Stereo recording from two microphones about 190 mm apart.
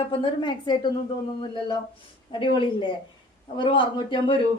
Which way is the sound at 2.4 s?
25° left (ahead or behind).